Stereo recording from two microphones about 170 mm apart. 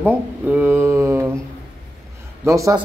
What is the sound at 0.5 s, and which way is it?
Mantra, 10° right (ahead or behind).